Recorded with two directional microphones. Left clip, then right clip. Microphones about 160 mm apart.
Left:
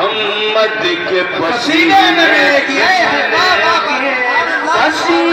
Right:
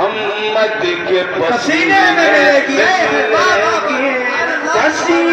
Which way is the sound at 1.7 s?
20° right (ahead or behind).